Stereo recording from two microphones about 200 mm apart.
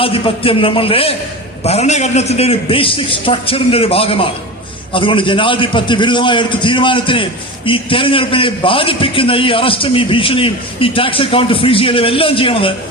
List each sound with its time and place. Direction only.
0.0 s a man's voice: 25° left (ahead or behind)